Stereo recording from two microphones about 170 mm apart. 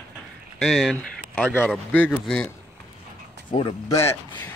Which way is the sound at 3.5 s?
30° left (ahead or behind).